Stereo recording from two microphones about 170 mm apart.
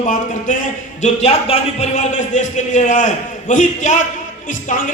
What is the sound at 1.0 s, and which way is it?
A man's voice, 40° left (ahead or behind).